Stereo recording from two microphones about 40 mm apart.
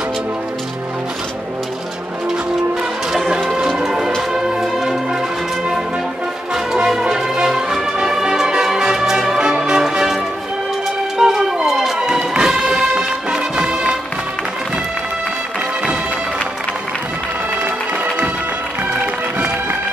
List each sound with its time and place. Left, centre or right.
3.1 s music: centre
6.5 s music: centre
11.7 s music: centre
12.0 s music: right